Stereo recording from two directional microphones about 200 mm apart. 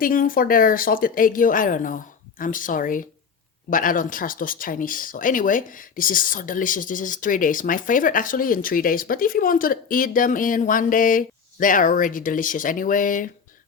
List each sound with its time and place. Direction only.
0.0 s speech: 45° left (ahead or behind)